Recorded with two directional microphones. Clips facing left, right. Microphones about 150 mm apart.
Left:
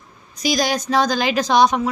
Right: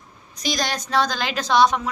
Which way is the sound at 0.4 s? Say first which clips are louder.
Left 6 dB; 10° left (ahead or behind).